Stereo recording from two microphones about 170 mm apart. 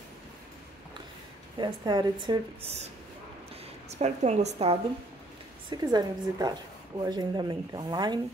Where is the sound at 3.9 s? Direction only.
40° right (ahead or behind).